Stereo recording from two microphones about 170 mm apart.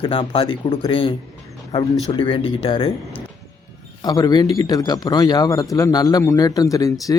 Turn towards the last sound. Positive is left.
turn(degrees=20)  # may be behind; listen again after turning